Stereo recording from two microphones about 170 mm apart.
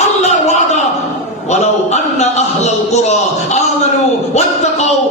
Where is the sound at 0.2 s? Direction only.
45° left (ahead or behind).